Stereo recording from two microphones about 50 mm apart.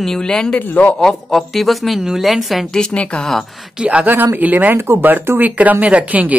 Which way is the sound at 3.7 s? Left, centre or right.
Right.